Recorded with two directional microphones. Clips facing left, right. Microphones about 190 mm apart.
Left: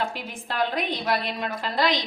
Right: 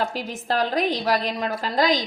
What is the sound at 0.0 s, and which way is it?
A woman's voice, 40° right (ahead or behind).